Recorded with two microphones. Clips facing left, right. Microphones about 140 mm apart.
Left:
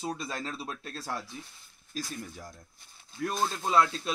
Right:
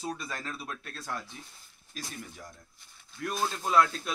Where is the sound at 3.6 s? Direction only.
25° left (ahead or behind).